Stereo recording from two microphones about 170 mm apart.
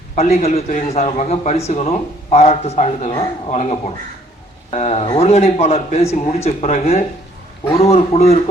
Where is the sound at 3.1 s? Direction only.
25° left (ahead or behind).